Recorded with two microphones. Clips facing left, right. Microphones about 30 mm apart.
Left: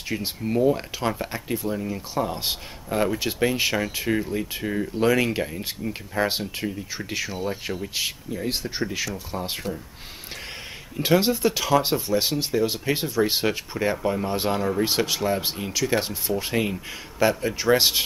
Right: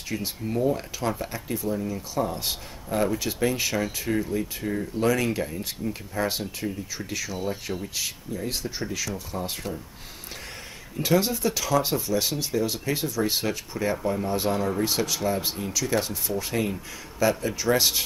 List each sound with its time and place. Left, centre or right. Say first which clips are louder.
0.1 s speech: left 3 dB; left
11.0 s speech: left 3 dB; left